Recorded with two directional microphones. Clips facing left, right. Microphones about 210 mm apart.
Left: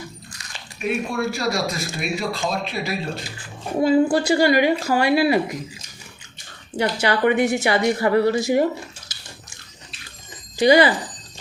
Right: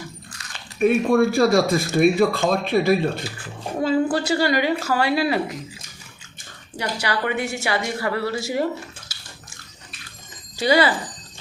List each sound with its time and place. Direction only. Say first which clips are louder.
0.8 s speech: right 7 dB; 50° right (ahead or behind)
3.8 s a woman's voice: left 4 dB; 10° left (ahead or behind)
6.7 s a woman's voice: left 5 dB; 25° left (ahead or behind)
9.1 s a sound: left 1 dB; 20° left (ahead or behind)
10.6 s a woman's voice: left 4 dB; 15° left (ahead or behind)